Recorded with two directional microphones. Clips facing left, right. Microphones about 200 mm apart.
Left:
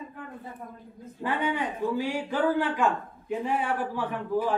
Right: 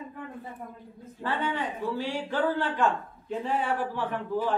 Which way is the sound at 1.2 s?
15° left (ahead or behind).